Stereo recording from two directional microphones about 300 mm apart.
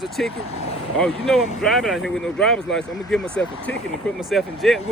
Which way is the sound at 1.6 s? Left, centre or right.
Centre.